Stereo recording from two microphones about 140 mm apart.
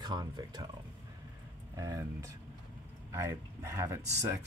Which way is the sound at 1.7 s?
25° right (ahead or behind).